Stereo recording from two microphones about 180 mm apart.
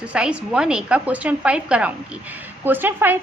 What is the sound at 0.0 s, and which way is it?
A woman's voice, 5° right (ahead or behind).